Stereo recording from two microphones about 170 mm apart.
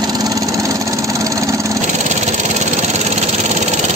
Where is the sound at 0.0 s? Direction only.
25° right (ahead or behind).